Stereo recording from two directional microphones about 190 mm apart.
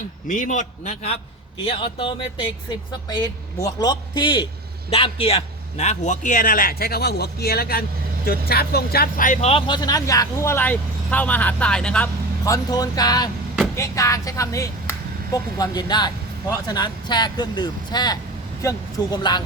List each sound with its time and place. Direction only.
0.3 s a man's voice: 40° left (ahead or behind); by 12.5 s 10° left (ahead or behind)
12.7 s speech: 20° left (ahead or behind)